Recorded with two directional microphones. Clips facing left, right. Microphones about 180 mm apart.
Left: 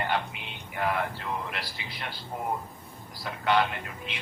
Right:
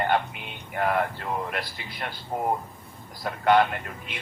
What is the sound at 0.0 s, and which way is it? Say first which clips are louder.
Speech: right 5 dB; 50° right (ahead or behind).